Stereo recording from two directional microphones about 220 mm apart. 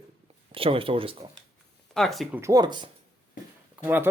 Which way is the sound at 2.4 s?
15° right (ahead or behind).